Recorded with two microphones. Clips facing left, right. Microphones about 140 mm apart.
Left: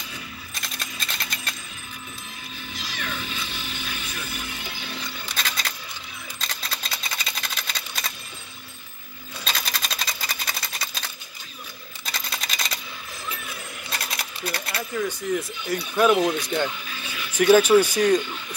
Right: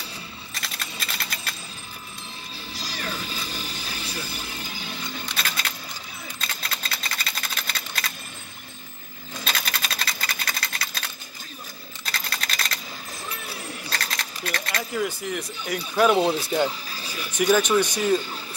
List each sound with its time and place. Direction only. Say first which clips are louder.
0.6 s typing: right 1 dB; 5° right (ahead or behind)
2.7 s music: right 1 dB; 35° right (ahead or behind)
5.2 s music: left 1 dB; 5° right (ahead or behind)
6.4 s a sound: even; centre (ahead or behind)
9.4 s sewing machine: even; centre (ahead or behind)
12.1 s computer keyboard: right 1 dB; centre (ahead or behind)
14.1 s a sound: even; 10° left (ahead or behind)
14.8 s speech: even; 5° right (ahead or behind)
16.2 s speech: right 1 dB; 30° right (ahead or behind)
16.6 s music: right 2 dB; 35° right (ahead or behind)
17.5 s speech: left 5 dB; 5° left (ahead or behind)